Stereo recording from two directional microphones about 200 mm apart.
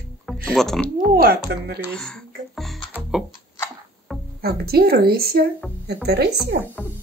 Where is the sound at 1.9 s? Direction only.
5° left (ahead or behind).